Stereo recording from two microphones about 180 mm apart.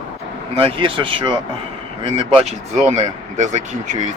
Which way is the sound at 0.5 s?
30° right (ahead or behind).